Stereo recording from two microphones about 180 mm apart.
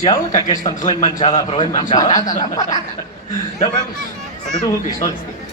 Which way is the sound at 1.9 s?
20° left (ahead or behind).